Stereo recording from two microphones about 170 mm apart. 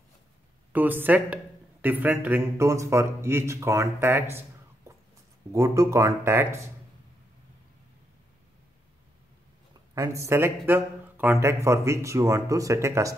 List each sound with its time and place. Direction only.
0.7 s a man's voice: 10° right (ahead or behind)
9.9 s speech: 15° right (ahead or behind)